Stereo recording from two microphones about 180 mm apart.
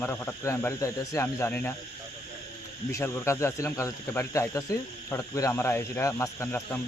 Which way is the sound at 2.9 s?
15° left (ahead or behind).